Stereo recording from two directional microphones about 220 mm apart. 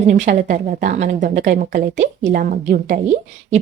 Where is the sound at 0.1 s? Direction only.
30° right (ahead or behind).